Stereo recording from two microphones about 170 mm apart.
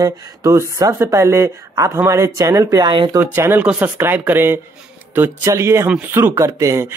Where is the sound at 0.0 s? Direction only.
20° right (ahead or behind).